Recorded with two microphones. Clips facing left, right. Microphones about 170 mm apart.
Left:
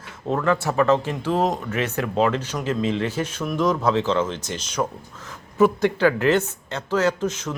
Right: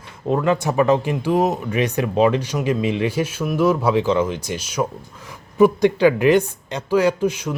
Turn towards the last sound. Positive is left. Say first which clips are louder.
# right 4 dB
turn(degrees=-10)  # may be behind; listen again after turning